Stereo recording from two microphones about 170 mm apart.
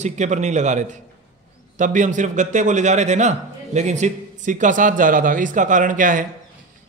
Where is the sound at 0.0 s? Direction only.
45° right (ahead or behind).